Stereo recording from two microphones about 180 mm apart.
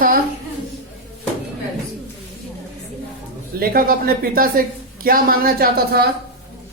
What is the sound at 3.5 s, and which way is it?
A woman's voice, 55° right (ahead or behind).